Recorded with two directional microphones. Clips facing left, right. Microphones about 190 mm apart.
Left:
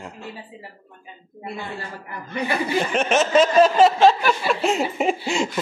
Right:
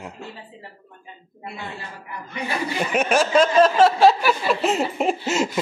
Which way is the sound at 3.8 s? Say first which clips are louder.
Even; 5° right (ahead or behind).